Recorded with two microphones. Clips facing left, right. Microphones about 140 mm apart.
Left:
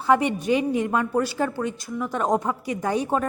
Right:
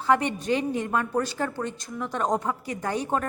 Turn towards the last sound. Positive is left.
turn(degrees=15)  # may be behind; listen again after turning